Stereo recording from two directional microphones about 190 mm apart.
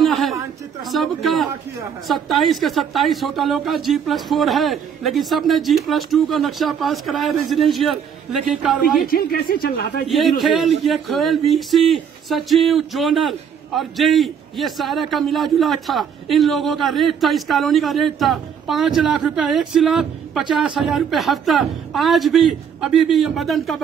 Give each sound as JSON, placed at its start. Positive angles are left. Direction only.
{"t": 0.0, "sound": "a sound", "side_deg": 0}
{"t": 0.8, "sound": "speech", "side_deg": 0}
{"t": 9.0, "sound": "speech", "side_deg": 50}
{"t": 10.0, "sound": "speech", "side_deg": 0}